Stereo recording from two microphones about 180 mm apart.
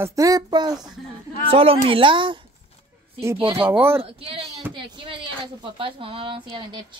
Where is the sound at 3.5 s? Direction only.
10° right (ahead or behind).